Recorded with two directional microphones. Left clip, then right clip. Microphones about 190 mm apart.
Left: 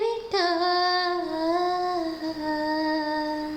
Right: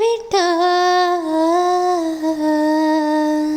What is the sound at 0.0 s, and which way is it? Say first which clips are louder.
Humming: right 9 dB; 45° right (ahead or behind).